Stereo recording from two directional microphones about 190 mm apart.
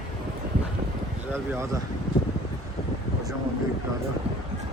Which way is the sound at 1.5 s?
15° right (ahead or behind).